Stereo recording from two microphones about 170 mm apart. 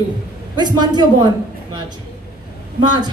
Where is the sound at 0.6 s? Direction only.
25° right (ahead or behind).